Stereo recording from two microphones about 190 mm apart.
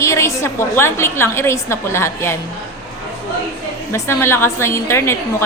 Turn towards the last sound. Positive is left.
turn(degrees=15)  # may be behind; listen again after turning